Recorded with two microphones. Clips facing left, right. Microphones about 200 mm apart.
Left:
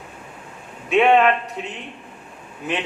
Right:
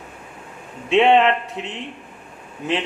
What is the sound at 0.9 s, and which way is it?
Speech, 25° right (ahead or behind).